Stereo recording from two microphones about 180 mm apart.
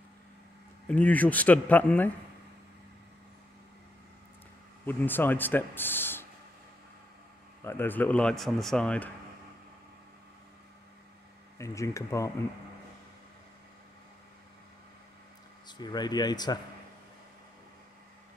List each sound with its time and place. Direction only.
0.8 s speech: 10° left (ahead or behind)
4.8 s speech: 10° left (ahead or behind)
7.6 s speech: 10° left (ahead or behind)
11.5 s speech: 15° left (ahead or behind)
15.6 s speech: 25° left (ahead or behind)